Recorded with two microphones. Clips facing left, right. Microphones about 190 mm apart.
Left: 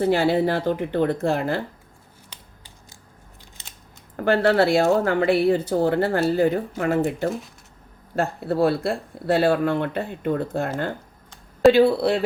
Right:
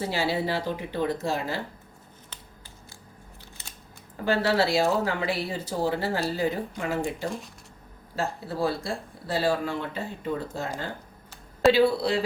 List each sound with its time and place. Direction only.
0.0 s speech: 55° left (ahead or behind)
4.2 s speech: 55° left (ahead or behind)
7.3 s speech: centre (ahead or behind)
8.1 s speech: 60° left (ahead or behind)
11.7 s speech: 55° left (ahead or behind)